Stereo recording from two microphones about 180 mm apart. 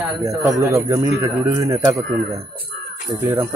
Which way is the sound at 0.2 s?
15° right (ahead or behind).